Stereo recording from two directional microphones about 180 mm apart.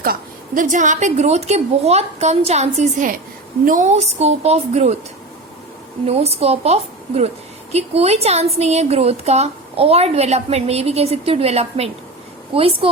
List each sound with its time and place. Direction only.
0.0 s a woman's voice: 50° right (ahead or behind)
6.1 s a woman's voice: 35° right (ahead or behind)